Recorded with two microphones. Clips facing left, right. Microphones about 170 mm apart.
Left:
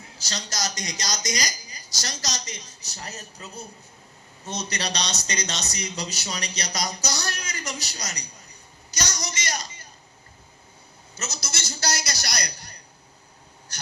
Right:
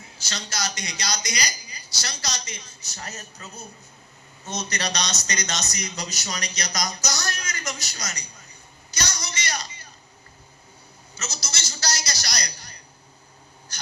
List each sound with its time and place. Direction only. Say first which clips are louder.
0.2 s a woman's voice: even; 40° left (ahead or behind)
4.4 s a woman's voice: right 1 dB; 30° left (ahead or behind)
8.9 s a sound: left 1 dB; 40° left (ahead or behind)
11.1 s a man's voice: left 1 dB; 55° left (ahead or behind)